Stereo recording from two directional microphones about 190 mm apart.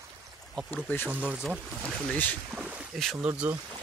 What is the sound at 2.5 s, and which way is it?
Speech, 10° right (ahead or behind).